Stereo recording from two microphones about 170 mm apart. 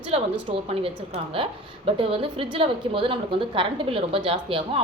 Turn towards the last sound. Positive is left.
turn(degrees=-35)  # may be behind; listen again after turning